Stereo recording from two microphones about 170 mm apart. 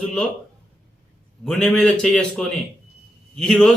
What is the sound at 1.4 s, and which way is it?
A man's voice, 5° left (ahead or behind).